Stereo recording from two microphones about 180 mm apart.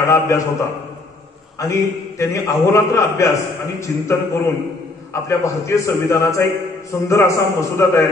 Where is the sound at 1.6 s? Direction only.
15° left (ahead or behind).